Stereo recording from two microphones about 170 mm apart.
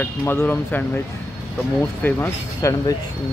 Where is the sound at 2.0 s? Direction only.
15° left (ahead or behind).